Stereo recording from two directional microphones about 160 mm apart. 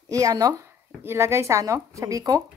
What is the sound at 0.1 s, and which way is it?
Speech, 20° right (ahead or behind).